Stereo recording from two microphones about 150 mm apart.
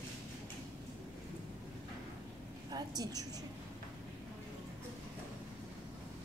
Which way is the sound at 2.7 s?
25° right (ahead or behind).